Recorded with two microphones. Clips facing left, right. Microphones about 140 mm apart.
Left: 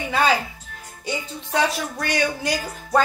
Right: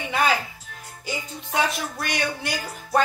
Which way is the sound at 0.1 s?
30° left (ahead or behind).